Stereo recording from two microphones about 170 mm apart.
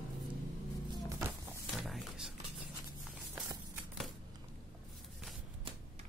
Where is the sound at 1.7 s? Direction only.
Centre (ahead or behind).